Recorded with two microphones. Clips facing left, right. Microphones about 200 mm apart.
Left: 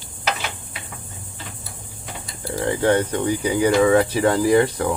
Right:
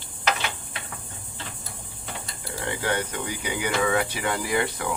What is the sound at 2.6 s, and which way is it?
Speech, 30° left (ahead or behind).